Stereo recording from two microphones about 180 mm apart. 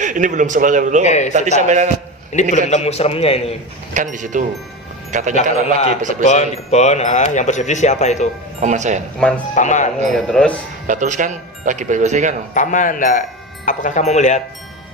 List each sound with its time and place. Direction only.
0.0 s speech: 45° right (ahead or behind)
1.0 s speech: 40° left (ahead or behind)
1.3 s a man's voice: 40° right (ahead or behind)
2.3 s speech: 40° left (ahead or behind)
3.9 s speech: 45° right (ahead or behind)
6.2 s speech: 40° left (ahead or behind)
8.6 s a man's voice: 40° right (ahead or behind)
9.2 s speech: 5° left (ahead or behind)
9.6 s speech: 40° left (ahead or behind)
10.1 s speech: centre (ahead or behind)
10.8 s speech: 45° right (ahead or behind)
12.5 s speech: 45° left (ahead or behind)